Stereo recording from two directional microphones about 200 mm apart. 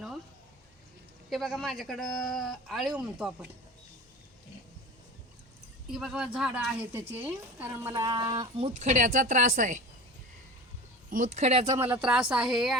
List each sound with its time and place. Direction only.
1.3 s speech: centre (ahead or behind)
5.9 s speech: 5° right (ahead or behind); by 9.8 s 40° right (ahead or behind)
11.1 s speech: 35° right (ahead or behind)
11.6 s speech: 15° right (ahead or behind)
12.3 s speech: 5° right (ahead or behind)